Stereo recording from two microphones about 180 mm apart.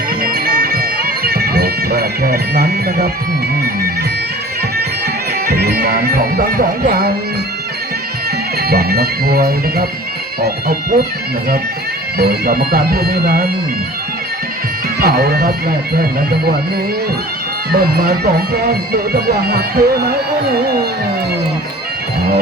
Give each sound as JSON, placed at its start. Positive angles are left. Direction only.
{"t": 0.2, "sound": "bagpipes", "side_deg": -55}
{"t": 5.5, "sound": "speech", "side_deg": -60}
{"t": 8.6, "sound": "speech", "side_deg": -60}
{"t": 12.1, "sound": "speech", "side_deg": -60}
{"t": 15.0, "sound": "speech", "side_deg": -60}
{"t": 17.7, "sound": "speech", "side_deg": -60}